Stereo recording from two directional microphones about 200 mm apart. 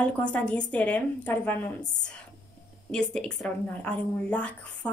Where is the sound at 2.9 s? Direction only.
5° left (ahead or behind).